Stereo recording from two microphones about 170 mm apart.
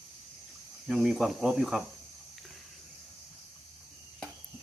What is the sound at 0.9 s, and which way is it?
Speech, centre (ahead or behind).